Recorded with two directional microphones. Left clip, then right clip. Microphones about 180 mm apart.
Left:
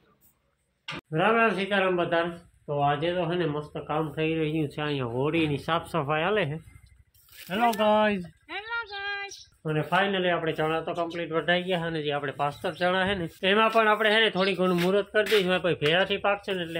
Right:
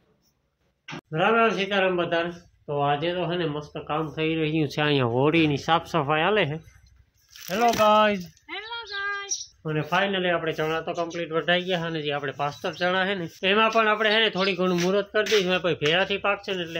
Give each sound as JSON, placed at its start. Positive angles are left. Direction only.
{"t": 1.1, "sound": "speech", "side_deg": 0}
{"t": 4.6, "sound": "speech", "side_deg": -55}
{"t": 5.5, "sound": "speech", "side_deg": -25}
{"t": 8.5, "sound": "speech", "side_deg": 0}